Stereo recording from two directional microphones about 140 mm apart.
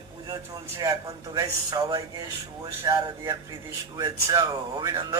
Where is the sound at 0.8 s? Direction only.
25° right (ahead or behind).